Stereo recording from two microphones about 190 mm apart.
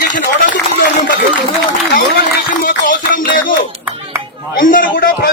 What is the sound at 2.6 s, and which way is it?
Speech, 50° left (ahead or behind).